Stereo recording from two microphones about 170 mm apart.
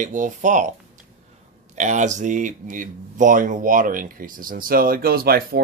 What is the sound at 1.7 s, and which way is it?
Speech, 45° right (ahead or behind).